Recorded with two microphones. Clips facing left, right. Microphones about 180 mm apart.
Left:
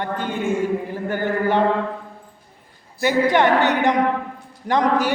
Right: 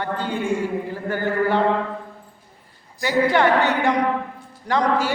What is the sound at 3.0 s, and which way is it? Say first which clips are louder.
A man's voice: left 1 dB; 20° left (ahead or behind).